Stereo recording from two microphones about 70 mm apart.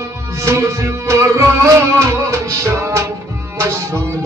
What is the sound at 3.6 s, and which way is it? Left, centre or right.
Tabla, right.